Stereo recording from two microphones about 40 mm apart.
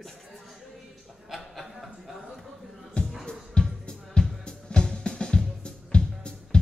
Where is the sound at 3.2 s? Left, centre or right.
Centre.